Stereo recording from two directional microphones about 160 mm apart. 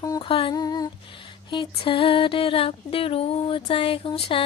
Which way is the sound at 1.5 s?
30° left (ahead or behind).